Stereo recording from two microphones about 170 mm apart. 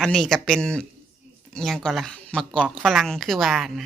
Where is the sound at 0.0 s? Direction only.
Centre (ahead or behind).